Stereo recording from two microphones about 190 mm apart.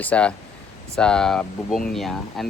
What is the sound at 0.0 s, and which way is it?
Speech, 5° left (ahead or behind).